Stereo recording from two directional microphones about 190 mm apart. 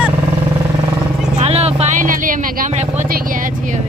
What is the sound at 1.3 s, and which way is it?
Vehicle, 35° right (ahead or behind).